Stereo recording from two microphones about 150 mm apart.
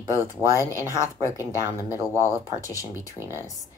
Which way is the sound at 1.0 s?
20° left (ahead or behind).